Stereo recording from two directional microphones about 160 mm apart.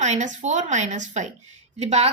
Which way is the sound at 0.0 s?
45° right (ahead or behind).